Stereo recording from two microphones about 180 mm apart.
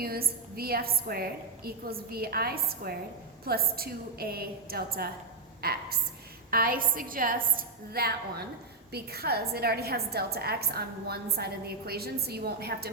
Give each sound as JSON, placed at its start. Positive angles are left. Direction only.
{"t": 0.0, "sound": "a woman's voice", "side_deg": -55}